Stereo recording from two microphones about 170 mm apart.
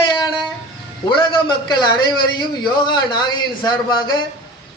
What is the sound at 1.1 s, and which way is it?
A man's voice, 25° left (ahead or behind).